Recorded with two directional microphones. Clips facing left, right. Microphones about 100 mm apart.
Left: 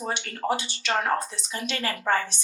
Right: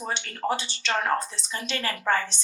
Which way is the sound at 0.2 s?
30° left (ahead or behind).